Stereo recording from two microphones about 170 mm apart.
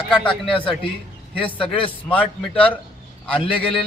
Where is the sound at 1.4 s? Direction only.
30° left (ahead or behind).